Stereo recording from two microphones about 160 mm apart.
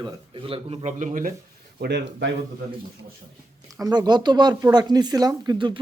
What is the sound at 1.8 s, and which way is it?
Speech, 85° right.